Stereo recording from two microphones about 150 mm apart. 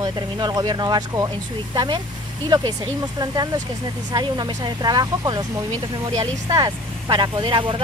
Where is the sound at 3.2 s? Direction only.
25° right (ahead or behind).